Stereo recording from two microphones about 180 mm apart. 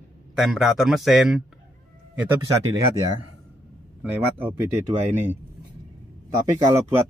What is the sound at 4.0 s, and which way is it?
Speech, 10° right (ahead or behind).